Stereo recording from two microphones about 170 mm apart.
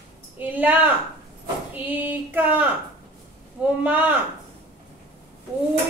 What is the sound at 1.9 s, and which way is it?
A woman's voice, 10° right (ahead or behind).